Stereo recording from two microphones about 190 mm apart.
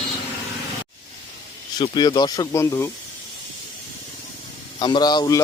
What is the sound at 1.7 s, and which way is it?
Speech, 20° left (ahead or behind).